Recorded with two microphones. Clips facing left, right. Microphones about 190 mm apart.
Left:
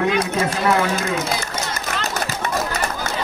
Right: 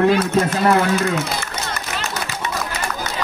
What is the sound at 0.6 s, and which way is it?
Speech, 55° right (ahead or behind).